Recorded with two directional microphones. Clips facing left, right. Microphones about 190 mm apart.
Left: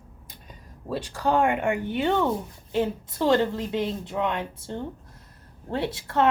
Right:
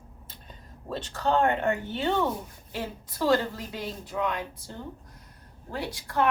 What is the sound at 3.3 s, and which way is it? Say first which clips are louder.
A woman's voice: left 3 dB; 25° left (ahead or behind).